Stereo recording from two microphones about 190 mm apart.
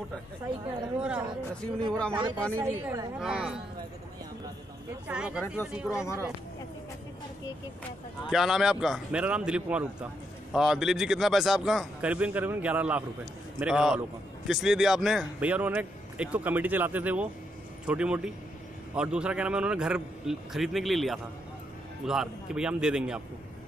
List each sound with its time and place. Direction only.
0.9 s a man's voice: 5° right (ahead or behind)
1.9 s a man's voice: 5° left (ahead or behind)
2.1 s a man's voice: 25° right (ahead or behind)
3.2 s a man's voice: 5° right (ahead or behind)
5.0 s a man's voice: 5° right (ahead or behind)
8.3 s a man's voice: centre (ahead or behind)